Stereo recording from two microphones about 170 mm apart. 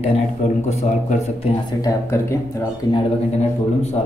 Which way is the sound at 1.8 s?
15° left (ahead or behind).